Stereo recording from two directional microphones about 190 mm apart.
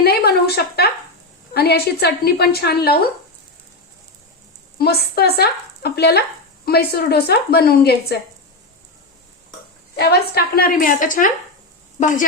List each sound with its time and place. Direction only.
0.0 s a sound: 55° left (ahead or behind)
1.5 s a woman's voice: 55° left (ahead or behind)
4.8 s a woman's voice: 55° left (ahead or behind)
9.9 s a woman's voice: 55° left (ahead or behind); by 12.2 s 40° left (ahead or behind)